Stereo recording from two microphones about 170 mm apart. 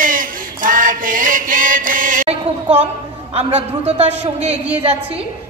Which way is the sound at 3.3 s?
40° right (ahead or behind).